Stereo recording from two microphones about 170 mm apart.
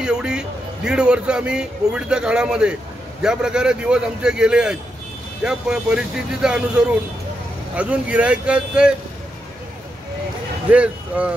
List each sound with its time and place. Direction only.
0.0 s a man's voice: 5° right (ahead or behind)
10.7 s speech: 5° right (ahead or behind)